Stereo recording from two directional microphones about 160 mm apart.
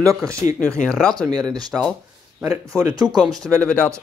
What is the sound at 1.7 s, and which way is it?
Speech, 10° right (ahead or behind).